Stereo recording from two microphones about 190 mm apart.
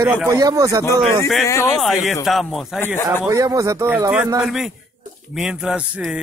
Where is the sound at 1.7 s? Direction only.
Centre (ahead or behind).